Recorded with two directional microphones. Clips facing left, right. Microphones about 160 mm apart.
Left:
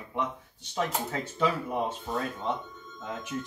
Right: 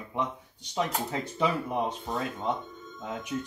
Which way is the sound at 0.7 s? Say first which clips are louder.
Right 1 dB; 10° right (ahead or behind).